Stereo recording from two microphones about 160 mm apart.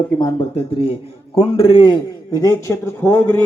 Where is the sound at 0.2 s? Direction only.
25° left (ahead or behind).